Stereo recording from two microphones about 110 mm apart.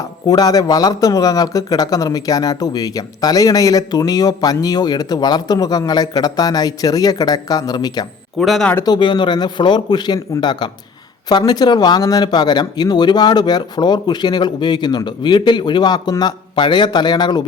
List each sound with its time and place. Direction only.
0.3 s speech: 35° left (ahead or behind)
8.4 s speech: centre (ahead or behind)
8.8 s speech: 45° left (ahead or behind)